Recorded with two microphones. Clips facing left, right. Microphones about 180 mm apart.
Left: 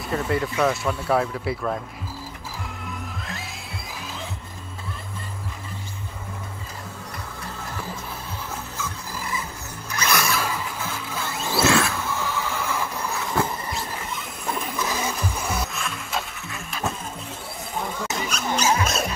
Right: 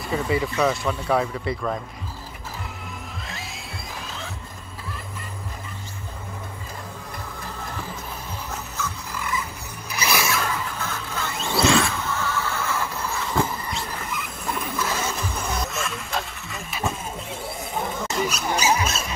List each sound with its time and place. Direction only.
0.1 s speech: centre (ahead or behind)
9.1 s music: 35° left (ahead or behind)
9.8 s music: 10° right (ahead or behind)
12.2 s neigh: 15° left (ahead or behind)
13.1 s vehicle: centre (ahead or behind)
14.8 s a sound: 15° left (ahead or behind)
18.0 s a sound: 5° right (ahead or behind)